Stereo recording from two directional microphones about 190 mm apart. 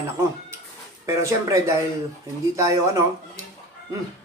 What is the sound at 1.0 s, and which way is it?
Speech, 15° right (ahead or behind).